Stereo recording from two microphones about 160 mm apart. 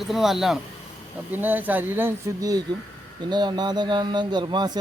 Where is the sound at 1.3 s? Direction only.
10° right (ahead or behind).